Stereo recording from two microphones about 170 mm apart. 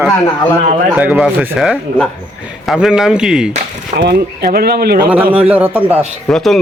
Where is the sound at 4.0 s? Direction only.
70° right (ahead or behind).